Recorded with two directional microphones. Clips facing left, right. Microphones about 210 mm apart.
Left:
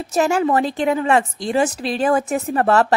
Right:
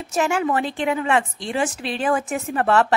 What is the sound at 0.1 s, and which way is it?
A woman's voice, 35° left (ahead or behind).